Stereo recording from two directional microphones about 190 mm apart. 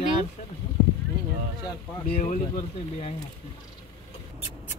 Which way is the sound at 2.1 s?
45° left (ahead or behind).